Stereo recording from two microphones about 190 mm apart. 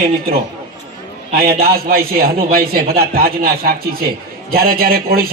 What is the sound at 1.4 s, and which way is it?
A man's voice, 55° right (ahead or behind).